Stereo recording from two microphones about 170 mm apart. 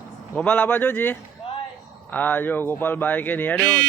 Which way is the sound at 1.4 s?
35° left (ahead or behind).